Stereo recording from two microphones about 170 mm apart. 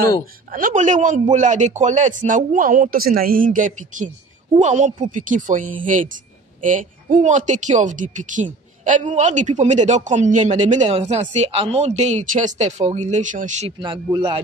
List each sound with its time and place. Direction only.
0.5 s a woman's voice: 50° right (ahead or behind)
13.7 s a man's voice: 30° right (ahead or behind)